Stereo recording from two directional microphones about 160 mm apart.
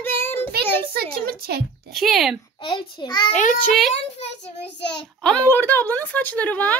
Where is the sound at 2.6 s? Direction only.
30° left (ahead or behind).